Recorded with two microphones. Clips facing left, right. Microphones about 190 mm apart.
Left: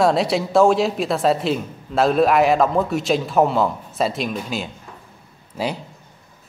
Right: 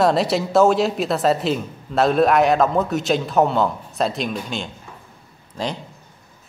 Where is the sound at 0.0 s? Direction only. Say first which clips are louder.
Even; centre (ahead or behind).